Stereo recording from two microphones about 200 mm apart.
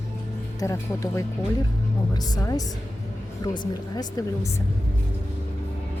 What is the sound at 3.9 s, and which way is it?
Speech, 20° left (ahead or behind).